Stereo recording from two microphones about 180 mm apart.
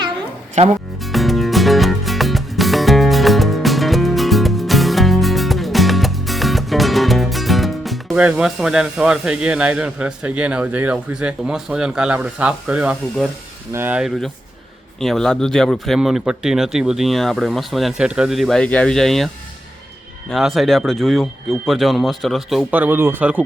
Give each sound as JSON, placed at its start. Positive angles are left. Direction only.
{"t": 0.6, "sound": "speech", "side_deg": -40}
{"t": 1.0, "sound": "music", "side_deg": 0}
{"t": 13.7, "sound": "speech", "side_deg": -10}
{"t": 20.3, "sound": "speech", "side_deg": 0}